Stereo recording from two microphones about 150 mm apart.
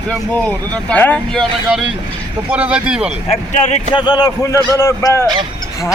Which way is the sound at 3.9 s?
30° left (ahead or behind).